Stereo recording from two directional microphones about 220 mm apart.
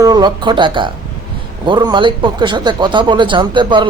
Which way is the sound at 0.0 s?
20° right (ahead or behind).